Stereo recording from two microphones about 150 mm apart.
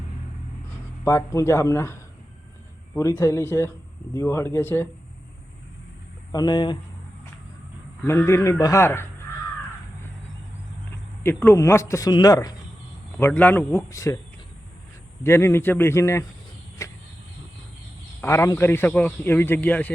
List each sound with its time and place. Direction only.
1.0 s speech: 20° left (ahead or behind)
3.0 s a man's voice: 20° left (ahead or behind)
6.3 s speech: 30° left (ahead or behind)
8.0 s a man's voice: 15° left (ahead or behind)
11.2 s speech: 15° left (ahead or behind)
13.1 s a man's voice: 15° left (ahead or behind)
15.2 s a man's voice: 15° left (ahead or behind)
16.8 s vehicle: 20° left (ahead or behind)
18.2 s a man's voice: 20° left (ahead or behind)